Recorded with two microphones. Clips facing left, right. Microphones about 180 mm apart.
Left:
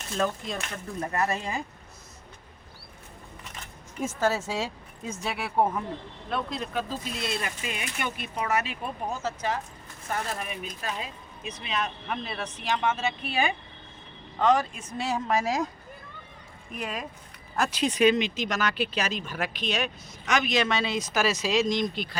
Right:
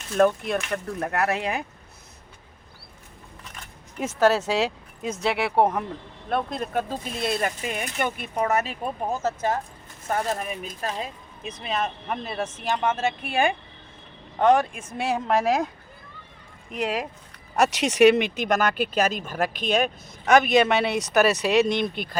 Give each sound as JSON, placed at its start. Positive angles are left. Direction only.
{"t": 0.2, "sound": "speech", "side_deg": -60}
{"t": 4.0, "sound": "speech", "side_deg": -70}
{"t": 6.2, "sound": "speech", "side_deg": -50}
{"t": 16.7, "sound": "speech", "side_deg": -80}
{"t": 21.9, "sound": "speech", "side_deg": -50}